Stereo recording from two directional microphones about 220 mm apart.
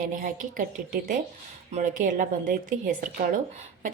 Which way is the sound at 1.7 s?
35° right (ahead or behind).